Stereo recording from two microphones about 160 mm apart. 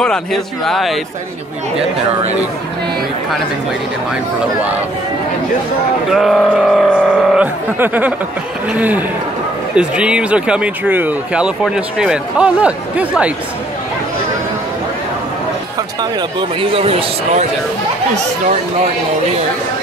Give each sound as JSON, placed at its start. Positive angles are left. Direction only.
{"t": 0.0, "sound": "speech", "side_deg": 5}
{"t": 6.0, "sound": "speech", "side_deg": 0}
{"t": 16.0, "sound": "speech", "side_deg": -30}